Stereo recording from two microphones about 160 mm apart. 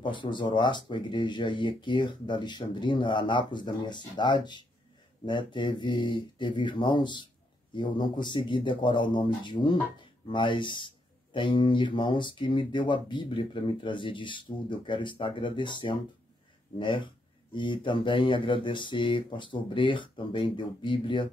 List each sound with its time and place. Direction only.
0.0 s speech: 30° left (ahead or behind)